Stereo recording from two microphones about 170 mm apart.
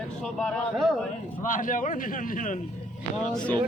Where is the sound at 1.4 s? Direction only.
50° left (ahead or behind).